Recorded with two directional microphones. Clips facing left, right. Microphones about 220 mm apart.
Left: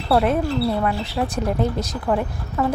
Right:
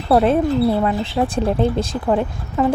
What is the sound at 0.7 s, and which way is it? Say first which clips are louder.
Speech: right 4 dB; 25° right (ahead or behind).